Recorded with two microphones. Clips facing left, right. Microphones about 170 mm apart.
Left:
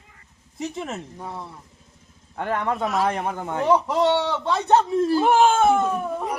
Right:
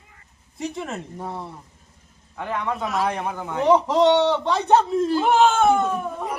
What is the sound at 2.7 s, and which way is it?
Speech, centre (ahead or behind).